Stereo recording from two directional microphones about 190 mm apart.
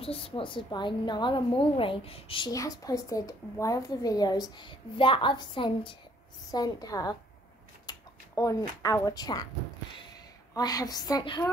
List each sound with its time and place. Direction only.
0.0 s a woman's voice: 30° left (ahead or behind)
7.9 s a sound: 20° left (ahead or behind)
8.4 s speech: 15° left (ahead or behind)
10.5 s a woman's voice: 20° left (ahead or behind)